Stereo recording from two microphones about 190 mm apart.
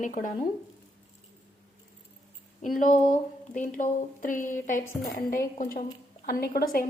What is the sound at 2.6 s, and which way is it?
A woman's voice, 45° left (ahead or behind).